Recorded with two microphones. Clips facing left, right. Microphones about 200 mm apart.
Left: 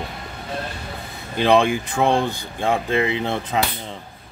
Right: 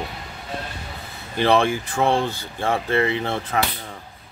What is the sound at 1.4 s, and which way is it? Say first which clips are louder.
Speech: left 2 dB; 15° left (ahead or behind).